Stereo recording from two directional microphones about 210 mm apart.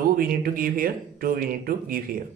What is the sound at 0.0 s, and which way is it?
Speech, 45° right (ahead or behind).